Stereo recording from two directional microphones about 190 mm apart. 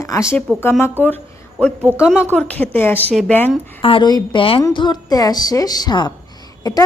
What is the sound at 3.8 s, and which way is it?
A woman's voice, 25° left (ahead or behind).